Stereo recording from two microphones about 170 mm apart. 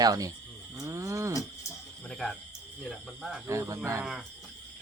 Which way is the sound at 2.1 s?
Centre (ahead or behind).